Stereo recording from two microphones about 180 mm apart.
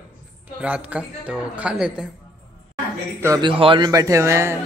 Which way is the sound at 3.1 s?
20° right (ahead or behind).